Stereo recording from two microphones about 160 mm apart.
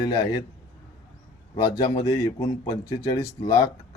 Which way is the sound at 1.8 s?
25° left (ahead or behind).